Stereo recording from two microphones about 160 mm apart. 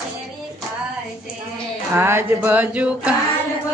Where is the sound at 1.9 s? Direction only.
15° right (ahead or behind).